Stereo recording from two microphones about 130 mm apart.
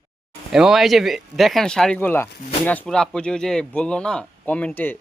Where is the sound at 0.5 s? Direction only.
5° right (ahead or behind).